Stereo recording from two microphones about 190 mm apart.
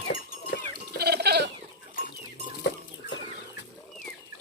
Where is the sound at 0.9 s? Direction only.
60° right (ahead or behind).